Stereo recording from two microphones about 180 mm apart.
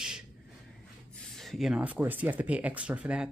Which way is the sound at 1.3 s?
Centre (ahead or behind).